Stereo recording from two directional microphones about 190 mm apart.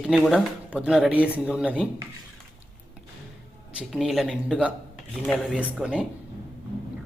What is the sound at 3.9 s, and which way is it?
Speech, centre (ahead or behind).